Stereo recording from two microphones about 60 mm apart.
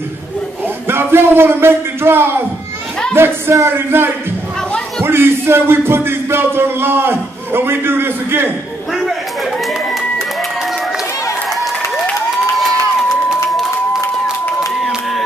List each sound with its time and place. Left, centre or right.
0.8 s speech: right
3.2 s music: right